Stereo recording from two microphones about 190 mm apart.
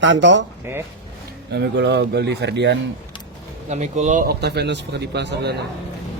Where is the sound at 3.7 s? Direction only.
40° right (ahead or behind); by 5.6 s 65° right (ahead or behind).